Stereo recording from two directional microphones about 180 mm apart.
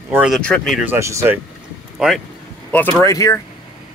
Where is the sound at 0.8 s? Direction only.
15° right (ahead or behind).